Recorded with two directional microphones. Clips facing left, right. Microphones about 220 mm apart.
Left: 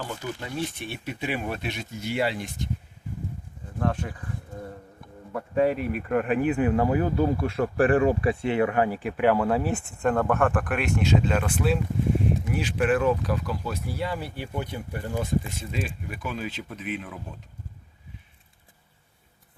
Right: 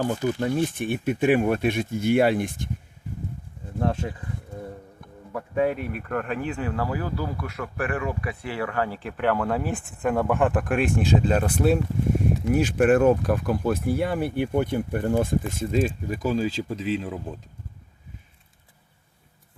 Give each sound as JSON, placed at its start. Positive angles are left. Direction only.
{"t": 0.0, "sound": "speech", "side_deg": -45}
{"t": 3.8, "sound": "speech", "side_deg": -30}
{"t": 5.6, "sound": "speech", "side_deg": 5}